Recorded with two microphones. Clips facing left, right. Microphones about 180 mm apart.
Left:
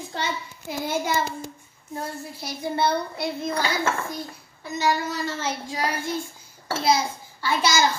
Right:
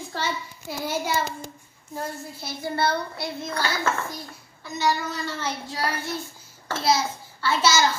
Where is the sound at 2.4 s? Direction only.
15° left (ahead or behind).